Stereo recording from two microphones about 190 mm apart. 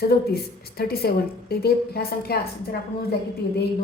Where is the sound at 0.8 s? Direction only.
55° left (ahead or behind).